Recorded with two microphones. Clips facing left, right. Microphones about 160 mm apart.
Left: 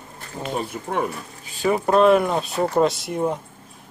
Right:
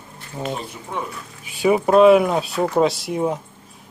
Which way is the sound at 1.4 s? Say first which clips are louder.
Right 3 dB; 10° right (ahead or behind).